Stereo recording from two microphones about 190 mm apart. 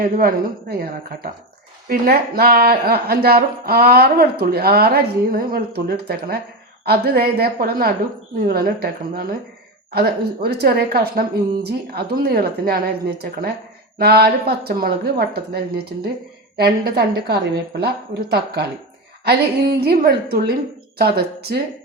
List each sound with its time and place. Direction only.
0.0 s a woman's voice: 50° right (ahead or behind)